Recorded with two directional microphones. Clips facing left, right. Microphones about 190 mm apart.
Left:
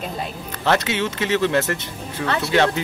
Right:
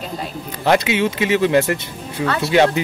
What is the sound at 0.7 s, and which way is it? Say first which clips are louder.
Speech: right 4 dB; 15° right (ahead or behind).